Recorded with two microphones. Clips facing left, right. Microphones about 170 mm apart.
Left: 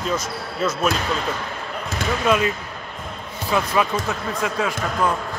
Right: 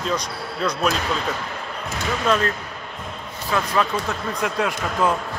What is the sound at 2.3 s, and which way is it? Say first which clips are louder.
Speech: left 1 dB; 10° left (ahead or behind).